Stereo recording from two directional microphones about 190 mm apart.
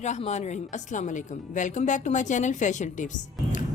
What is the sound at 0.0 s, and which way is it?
A woman's voice, 40° left (ahead or behind).